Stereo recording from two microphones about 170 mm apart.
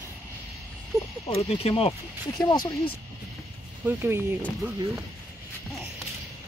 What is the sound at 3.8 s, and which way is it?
Speech, 15° right (ahead or behind).